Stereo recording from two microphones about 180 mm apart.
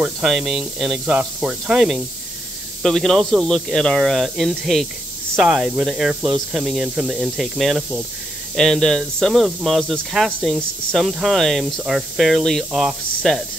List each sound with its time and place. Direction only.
0.0 s speech: centre (ahead or behind)